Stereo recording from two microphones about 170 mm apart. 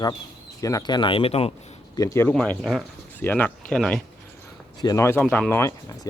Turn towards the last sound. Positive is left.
turn(degrees=15)  # may be behind; listen again after turning